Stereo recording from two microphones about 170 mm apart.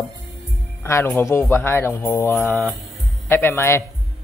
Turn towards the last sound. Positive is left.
turn(degrees=15)  # may be behind; listen again after turning